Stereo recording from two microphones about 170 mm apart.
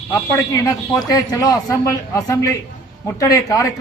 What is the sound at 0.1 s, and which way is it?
A man's voice, 20° left (ahead or behind).